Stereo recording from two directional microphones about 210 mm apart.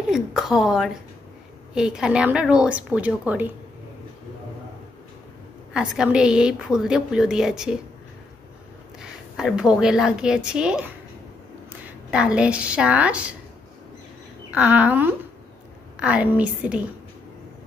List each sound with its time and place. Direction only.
0.1 s a woman's voice: centre (ahead or behind)
5.7 s a woman's voice: 5° right (ahead or behind)
9.4 s a woman's voice: 5° right (ahead or behind)
14.5 s a woman's voice: 10° right (ahead or behind)